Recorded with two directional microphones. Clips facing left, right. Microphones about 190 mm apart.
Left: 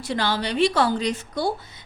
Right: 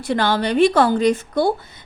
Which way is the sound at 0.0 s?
55° right (ahead or behind).